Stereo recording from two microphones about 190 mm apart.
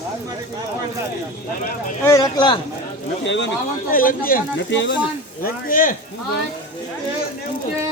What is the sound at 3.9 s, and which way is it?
Speech, 50° left (ahead or behind).